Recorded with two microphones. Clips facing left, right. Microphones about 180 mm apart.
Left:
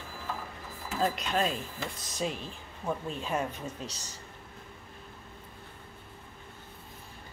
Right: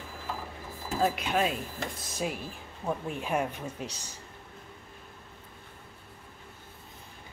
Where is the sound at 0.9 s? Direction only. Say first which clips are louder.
Right 2 dB; 10° right (ahead or behind).